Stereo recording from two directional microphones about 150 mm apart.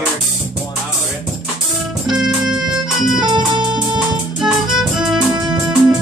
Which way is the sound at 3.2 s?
30° right (ahead or behind).